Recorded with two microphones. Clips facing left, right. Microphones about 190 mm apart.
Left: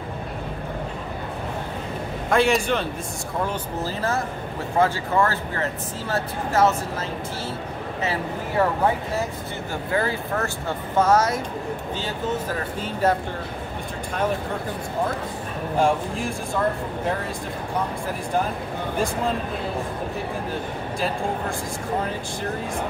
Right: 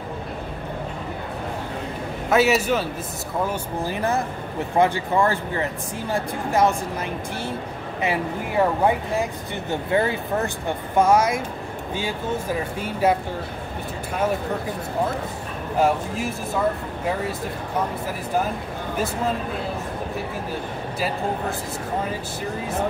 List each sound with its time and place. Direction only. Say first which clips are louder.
2.2 s a man's voice: right 1 dB; 5° right (ahead or behind)
3.4 s speech: right 1 dB; 15° right (ahead or behind)
8.0 s speech: right 3 dB; 15° right (ahead or behind)
12.5 s speech: right 1 dB; 10° right (ahead or behind)
15.8 s a man's voice: right 1 dB; 5° right (ahead or behind)